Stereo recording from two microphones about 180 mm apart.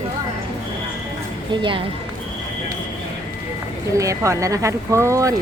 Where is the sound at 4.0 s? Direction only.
15° right (ahead or behind).